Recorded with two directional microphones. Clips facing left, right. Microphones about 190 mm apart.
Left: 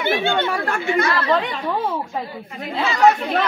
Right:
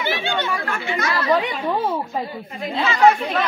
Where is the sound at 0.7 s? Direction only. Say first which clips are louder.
Left 5 dB; 45° left (ahead or behind).